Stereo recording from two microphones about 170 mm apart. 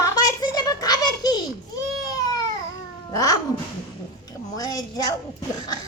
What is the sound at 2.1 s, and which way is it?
Baby cry, 20° left (ahead or behind).